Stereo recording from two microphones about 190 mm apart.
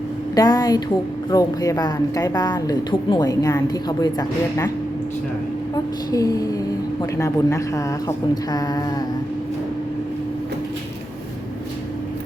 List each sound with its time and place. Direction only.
0.3 s speech: 20° left (ahead or behind)
5.7 s speech: 20° left (ahead or behind)